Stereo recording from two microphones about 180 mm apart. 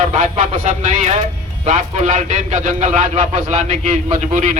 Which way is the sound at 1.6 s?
40° right (ahead or behind).